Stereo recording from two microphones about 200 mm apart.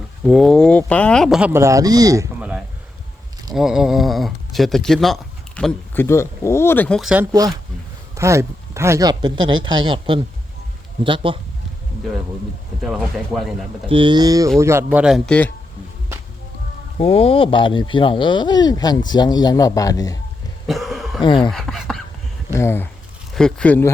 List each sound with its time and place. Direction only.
0.3 s speech: centre (ahead or behind); by 2.2 s 20° right (ahead or behind)
2.4 s a sound: 5° right (ahead or behind)
3.5 s speech: centre (ahead or behind); by 11.3 s 25° right (ahead or behind)
12.8 s speech: centre (ahead or behind)
13.8 s speech: 25° right (ahead or behind); by 15.5 s 5° left (ahead or behind)
17.0 s speech: 30° left (ahead or behind)
20.7 s cough: centre (ahead or behind)
21.2 s speech: 25° left (ahead or behind)
21.5 s a sound: centre (ahead or behind)
22.5 s speech: 10° left (ahead or behind)